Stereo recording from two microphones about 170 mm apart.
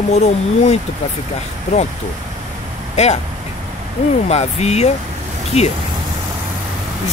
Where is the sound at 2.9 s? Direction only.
40° left (ahead or behind).